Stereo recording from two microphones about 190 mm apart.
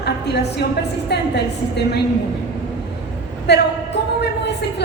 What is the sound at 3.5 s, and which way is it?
Speech, 60° left (ahead or behind).